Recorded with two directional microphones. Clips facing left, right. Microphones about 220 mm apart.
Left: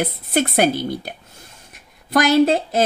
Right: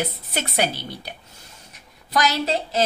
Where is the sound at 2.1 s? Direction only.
55° left (ahead or behind).